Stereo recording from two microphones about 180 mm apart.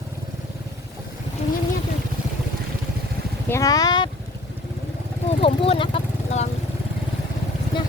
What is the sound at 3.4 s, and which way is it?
Speech, 15° left (ahead or behind).